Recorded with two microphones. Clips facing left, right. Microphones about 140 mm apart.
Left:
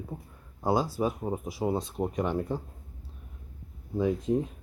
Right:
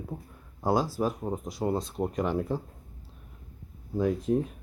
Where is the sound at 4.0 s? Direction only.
Centre (ahead or behind).